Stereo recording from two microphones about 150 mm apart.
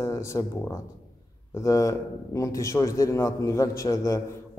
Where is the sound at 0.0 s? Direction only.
20° left (ahead or behind).